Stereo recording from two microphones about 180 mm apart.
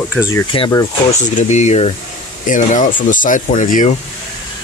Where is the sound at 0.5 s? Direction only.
30° left (ahead or behind).